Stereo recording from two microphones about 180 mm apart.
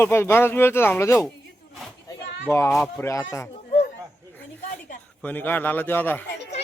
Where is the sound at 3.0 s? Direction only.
15° left (ahead or behind).